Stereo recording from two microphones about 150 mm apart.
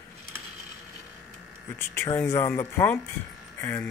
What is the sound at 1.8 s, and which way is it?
Speech, 15° left (ahead or behind).